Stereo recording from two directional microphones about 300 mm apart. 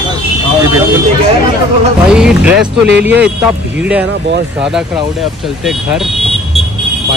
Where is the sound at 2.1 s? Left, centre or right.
Centre.